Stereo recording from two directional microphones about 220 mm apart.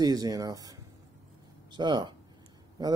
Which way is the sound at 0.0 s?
15° right (ahead or behind).